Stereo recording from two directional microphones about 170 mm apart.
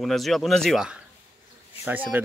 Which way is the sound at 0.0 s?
Centre (ahead or behind).